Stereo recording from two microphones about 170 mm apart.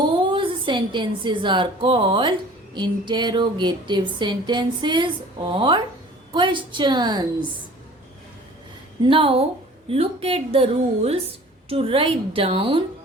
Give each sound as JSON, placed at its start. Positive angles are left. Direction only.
{"t": 0.3, "sound": "a woman's voice", "side_deg": -30}
{"t": 9.0, "sound": "speech", "side_deg": -30}